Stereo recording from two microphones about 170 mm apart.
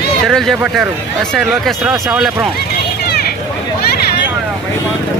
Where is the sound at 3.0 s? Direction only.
65° left (ahead or behind).